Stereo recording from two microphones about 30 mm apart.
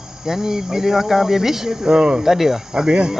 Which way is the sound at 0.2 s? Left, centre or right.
Centre.